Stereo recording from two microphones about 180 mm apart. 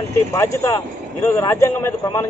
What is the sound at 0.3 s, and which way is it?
Speech, 15° left (ahead or behind).